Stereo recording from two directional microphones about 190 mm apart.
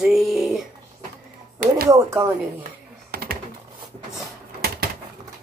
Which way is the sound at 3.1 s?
55° right (ahead or behind).